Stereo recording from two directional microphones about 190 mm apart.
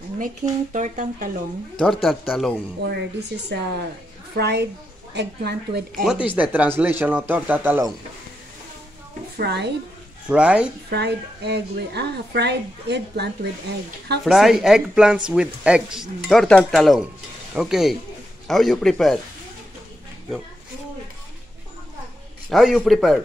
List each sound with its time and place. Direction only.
0.4 s speech: 20° right (ahead or behind)
0.7 s speech: 40° right (ahead or behind)
1.8 s speech: centre (ahead or behind)
2.8 s a woman's voice: 60° right (ahead or behind)
6.0 s speech: 5° right (ahead or behind)
9.4 s a woman's voice: 60° right (ahead or behind)
10.2 s speech: 5° right (ahead or behind)
10.9 s a woman's voice: 60° right (ahead or behind)
14.2 s speech: centre (ahead or behind)
22.5 s speech: centre (ahead or behind)